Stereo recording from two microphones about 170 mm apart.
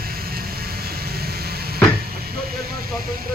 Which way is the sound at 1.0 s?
65° right (ahead or behind).